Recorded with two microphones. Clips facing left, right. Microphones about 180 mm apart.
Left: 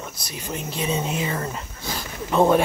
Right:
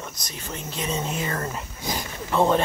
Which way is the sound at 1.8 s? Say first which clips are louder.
Right 5 dB; 15° right (ahead or behind).